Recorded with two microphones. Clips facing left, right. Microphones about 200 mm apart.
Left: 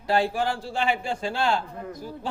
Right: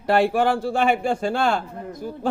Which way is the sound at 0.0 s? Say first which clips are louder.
Right 5 dB; 60° right (ahead or behind).